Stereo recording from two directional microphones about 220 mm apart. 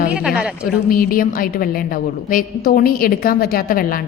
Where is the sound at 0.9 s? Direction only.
40° left (ahead or behind).